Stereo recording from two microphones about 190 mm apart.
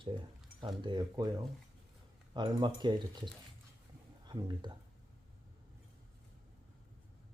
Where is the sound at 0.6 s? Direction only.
25° right (ahead or behind).